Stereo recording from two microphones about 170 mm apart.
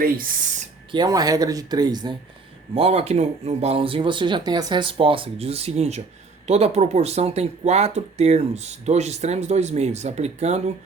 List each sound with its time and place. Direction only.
0.0 s speech: 55° right (ahead or behind)
0.9 s speech: 25° right (ahead or behind)
2.7 s speech: 35° right (ahead or behind)